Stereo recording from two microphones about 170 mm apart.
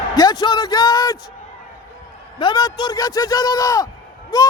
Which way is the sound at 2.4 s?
25° left (ahead or behind).